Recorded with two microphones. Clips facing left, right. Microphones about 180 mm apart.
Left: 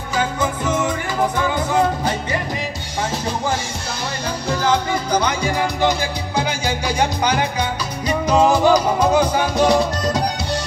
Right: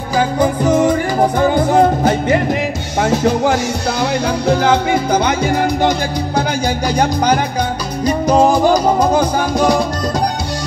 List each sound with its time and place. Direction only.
0.1 s music: 35° right (ahead or behind)
4.5 s music: 60° right (ahead or behind)
8.3 s music: 45° right (ahead or behind)